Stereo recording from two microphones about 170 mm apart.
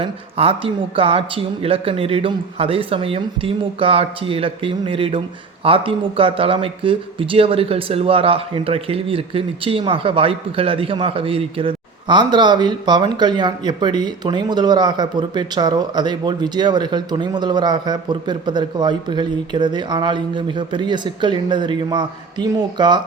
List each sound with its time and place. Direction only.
0.0 s speech: 30° right (ahead or behind)